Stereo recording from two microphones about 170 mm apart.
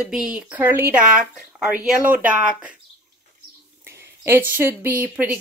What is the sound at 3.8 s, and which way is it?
Speech, 15° right (ahead or behind).